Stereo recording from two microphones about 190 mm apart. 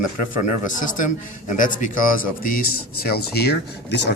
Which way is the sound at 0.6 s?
45° left (ahead or behind).